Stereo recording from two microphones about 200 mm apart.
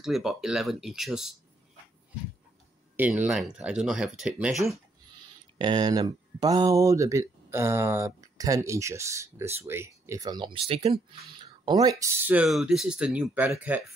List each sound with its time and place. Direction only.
0.0 s speech: centre (ahead or behind)
3.0 s speech: 5° right (ahead or behind)
5.6 s speech: 20° right (ahead or behind)